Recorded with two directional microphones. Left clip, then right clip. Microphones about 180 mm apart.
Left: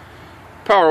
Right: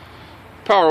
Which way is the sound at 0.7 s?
5° left (ahead or behind).